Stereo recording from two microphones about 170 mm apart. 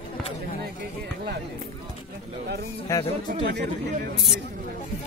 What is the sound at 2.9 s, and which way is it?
Speech, 15° left (ahead or behind).